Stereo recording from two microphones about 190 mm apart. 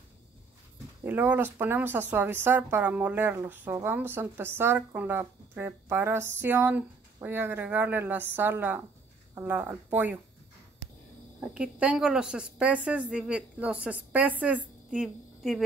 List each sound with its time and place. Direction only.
1.0 s speech: 10° right (ahead or behind)
11.5 s speech: 5° right (ahead or behind)